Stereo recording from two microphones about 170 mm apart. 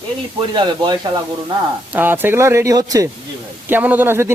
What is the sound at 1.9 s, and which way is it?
Speech, 10° right (ahead or behind).